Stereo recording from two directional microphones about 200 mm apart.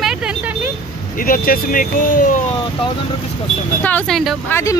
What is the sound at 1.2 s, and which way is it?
Speech, 45° left (ahead or behind).